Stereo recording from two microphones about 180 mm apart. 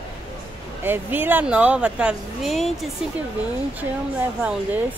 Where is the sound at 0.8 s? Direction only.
10° right (ahead or behind).